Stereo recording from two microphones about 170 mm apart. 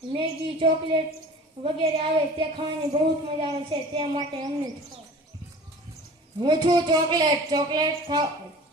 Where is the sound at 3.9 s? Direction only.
25° right (ahead or behind).